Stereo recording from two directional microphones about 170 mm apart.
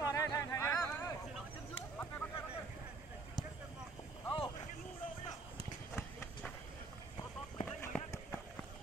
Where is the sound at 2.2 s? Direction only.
10° left (ahead or behind).